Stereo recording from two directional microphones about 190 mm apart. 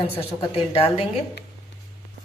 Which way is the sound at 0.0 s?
30° left (ahead or behind).